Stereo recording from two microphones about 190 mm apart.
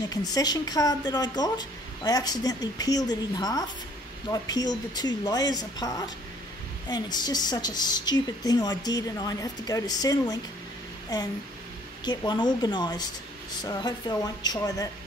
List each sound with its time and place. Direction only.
0.1 s speech: 20° left (ahead or behind)